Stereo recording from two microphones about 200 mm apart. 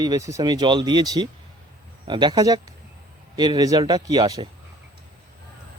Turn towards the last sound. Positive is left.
turn(degrees=-20)  # may be behind; listen again after turning